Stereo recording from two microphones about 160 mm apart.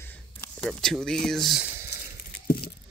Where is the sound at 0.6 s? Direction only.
5° left (ahead or behind).